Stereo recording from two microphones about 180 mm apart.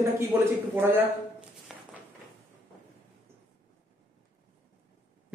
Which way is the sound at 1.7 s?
Centre (ahead or behind).